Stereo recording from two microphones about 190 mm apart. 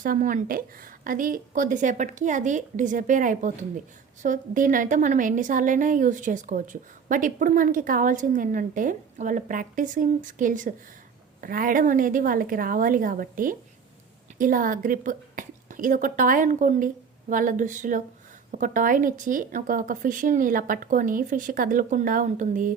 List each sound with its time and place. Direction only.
0.0 s a woman's voice: 45° right (ahead or behind)